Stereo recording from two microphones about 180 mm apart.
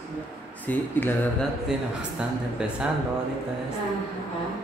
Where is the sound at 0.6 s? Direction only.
10° left (ahead or behind).